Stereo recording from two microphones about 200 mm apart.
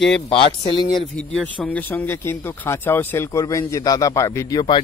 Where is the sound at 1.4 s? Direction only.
5° left (ahead or behind).